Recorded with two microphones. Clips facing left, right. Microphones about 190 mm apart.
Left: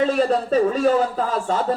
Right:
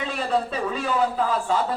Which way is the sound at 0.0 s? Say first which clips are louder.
Left 6 dB; 40° left (ahead or behind).